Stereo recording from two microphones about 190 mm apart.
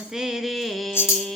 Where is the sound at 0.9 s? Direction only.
5° left (ahead or behind).